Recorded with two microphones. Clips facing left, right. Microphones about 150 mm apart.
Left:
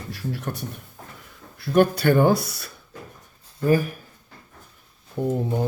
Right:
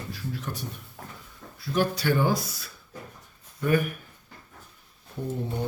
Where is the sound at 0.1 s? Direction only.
65° left (ahead or behind).